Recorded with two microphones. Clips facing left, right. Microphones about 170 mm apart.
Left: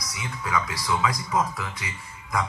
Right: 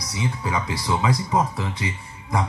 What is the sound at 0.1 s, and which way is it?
A man's voice, 30° right (ahead or behind).